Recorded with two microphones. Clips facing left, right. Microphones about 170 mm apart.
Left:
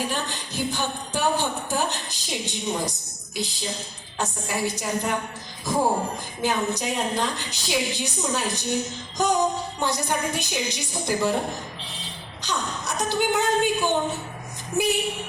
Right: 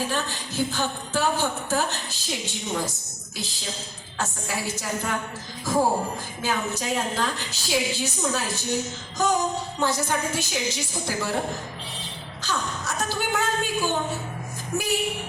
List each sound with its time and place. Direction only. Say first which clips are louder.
0.0 s a woman's voice: even; 15° left (ahead or behind)
6.4 s a woman's voice: left 3 dB; 15° left (ahead or behind)
12.4 s a woman's voice: even; 15° left (ahead or behind)
14.7 s vehicle: left 4 dB; 20° left (ahead or behind)